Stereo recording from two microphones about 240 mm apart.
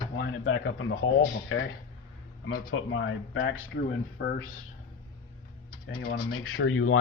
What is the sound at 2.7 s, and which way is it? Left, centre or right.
Speech, left.